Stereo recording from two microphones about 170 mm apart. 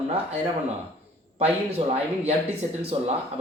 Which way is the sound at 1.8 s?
30° right (ahead or behind).